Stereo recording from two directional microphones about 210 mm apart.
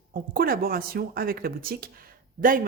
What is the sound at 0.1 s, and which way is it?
A woman's voice, 45° right (ahead or behind).